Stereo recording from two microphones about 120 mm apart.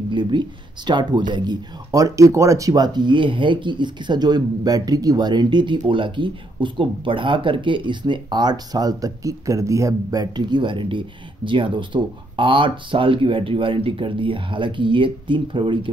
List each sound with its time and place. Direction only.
0.1 s speech: 40° right (ahead or behind)